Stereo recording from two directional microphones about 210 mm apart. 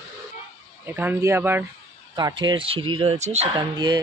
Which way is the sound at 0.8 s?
10° right (ahead or behind).